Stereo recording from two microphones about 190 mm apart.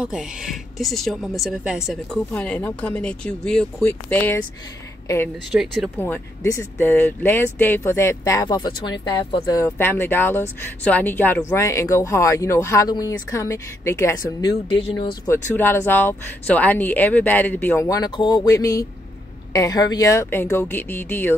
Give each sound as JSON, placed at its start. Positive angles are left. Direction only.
{"t": 0.0, "sound": "a woman's voice", "side_deg": -5}
{"t": 5.5, "sound": "a woman's voice", "side_deg": 0}
{"t": 5.9, "sound": "speech", "side_deg": 10}
{"t": 9.7, "sound": "speech", "side_deg": 10}
{"t": 14.7, "sound": "speech", "side_deg": 30}
{"t": 15.2, "sound": "speech", "side_deg": 10}